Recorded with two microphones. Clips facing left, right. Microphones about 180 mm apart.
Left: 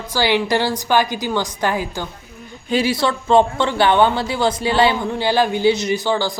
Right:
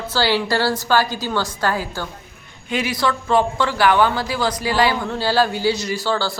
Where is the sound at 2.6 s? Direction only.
30° left (ahead or behind).